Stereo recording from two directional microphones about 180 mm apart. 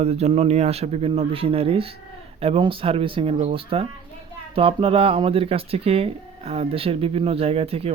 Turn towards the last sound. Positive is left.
turn(degrees=-35)  # may be behind; listen again after turning